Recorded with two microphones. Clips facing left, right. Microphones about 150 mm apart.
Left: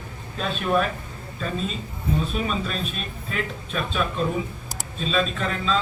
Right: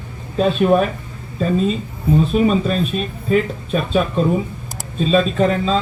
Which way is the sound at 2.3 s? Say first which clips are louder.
Right 11 dB; 45° right (ahead or behind).